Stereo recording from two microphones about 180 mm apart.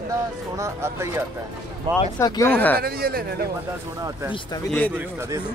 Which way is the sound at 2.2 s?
20° left (ahead or behind).